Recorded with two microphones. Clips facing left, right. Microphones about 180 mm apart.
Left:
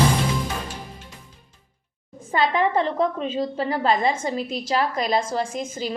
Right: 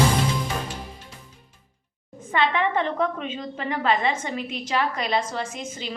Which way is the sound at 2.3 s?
35° left (ahead or behind).